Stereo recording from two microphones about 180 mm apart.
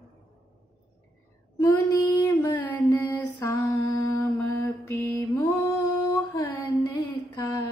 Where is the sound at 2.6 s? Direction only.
10° left (ahead or behind).